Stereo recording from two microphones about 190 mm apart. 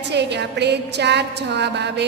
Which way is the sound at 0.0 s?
65° right (ahead or behind).